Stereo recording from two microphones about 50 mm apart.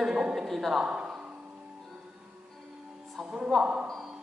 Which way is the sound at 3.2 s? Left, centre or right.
Right.